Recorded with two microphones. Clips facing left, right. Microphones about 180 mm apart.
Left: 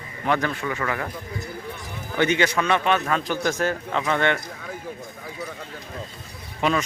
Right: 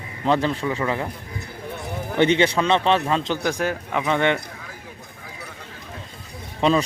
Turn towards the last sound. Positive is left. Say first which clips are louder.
# right 4 dB
turn(degrees=-30)  # may be behind; listen again after turning